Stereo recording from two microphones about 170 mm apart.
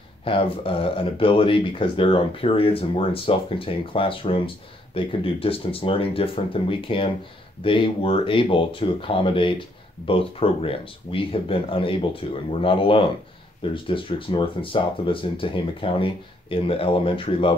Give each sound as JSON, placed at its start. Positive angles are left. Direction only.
{"t": 0.2, "sound": "speech", "side_deg": 30}